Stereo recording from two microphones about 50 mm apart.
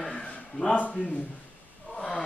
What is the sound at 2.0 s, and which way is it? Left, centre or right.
Speech, centre.